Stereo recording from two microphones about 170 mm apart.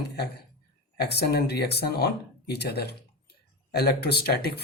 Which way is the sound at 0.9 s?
70° left (ahead or behind).